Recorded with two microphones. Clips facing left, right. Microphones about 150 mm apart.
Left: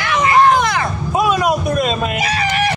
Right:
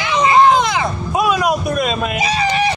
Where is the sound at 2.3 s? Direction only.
20° right (ahead or behind).